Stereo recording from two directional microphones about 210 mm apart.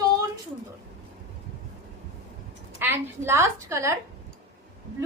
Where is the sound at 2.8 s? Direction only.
10° right (ahead or behind).